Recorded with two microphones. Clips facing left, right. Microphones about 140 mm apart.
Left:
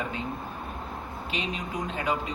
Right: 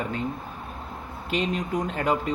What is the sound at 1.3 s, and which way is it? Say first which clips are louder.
A man's voice: right 7 dB; 50° right (ahead or behind).